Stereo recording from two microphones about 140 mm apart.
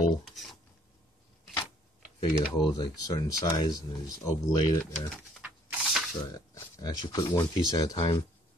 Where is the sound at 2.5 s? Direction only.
30° left (ahead or behind).